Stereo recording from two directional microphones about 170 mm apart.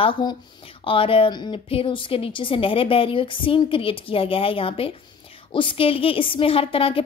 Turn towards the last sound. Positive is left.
turn(degrees=30)  # may be behind; listen again after turning